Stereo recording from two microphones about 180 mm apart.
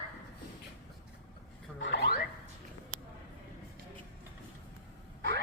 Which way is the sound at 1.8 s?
85° left.